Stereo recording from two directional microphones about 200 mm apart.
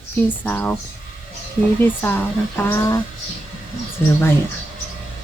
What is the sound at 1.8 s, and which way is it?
Speech, 10° left (ahead or behind).